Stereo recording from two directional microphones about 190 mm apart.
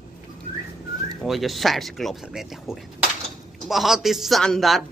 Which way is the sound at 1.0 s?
Centre (ahead or behind).